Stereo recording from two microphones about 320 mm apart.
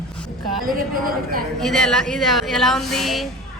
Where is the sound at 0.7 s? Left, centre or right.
Right.